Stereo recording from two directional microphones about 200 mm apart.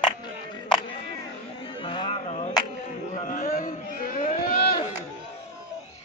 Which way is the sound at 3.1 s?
45° left (ahead or behind).